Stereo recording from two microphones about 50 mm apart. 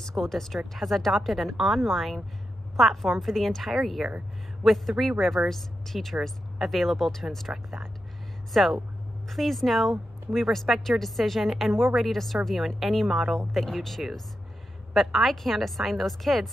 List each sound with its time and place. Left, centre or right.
0.0 s a woman's voice: centre